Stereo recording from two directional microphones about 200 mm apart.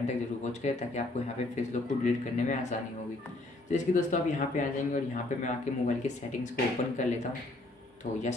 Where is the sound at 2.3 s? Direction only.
35° left (ahead or behind).